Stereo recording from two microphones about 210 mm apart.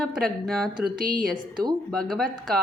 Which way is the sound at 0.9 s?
40° right (ahead or behind).